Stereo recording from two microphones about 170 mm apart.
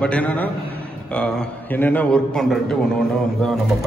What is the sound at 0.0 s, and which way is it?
A man's voice, 10° left (ahead or behind).